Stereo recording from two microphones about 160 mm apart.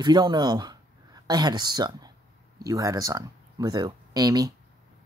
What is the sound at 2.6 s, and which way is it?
Speech, 20° right (ahead or behind).